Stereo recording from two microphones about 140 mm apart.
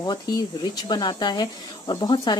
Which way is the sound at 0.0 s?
30° left (ahead or behind).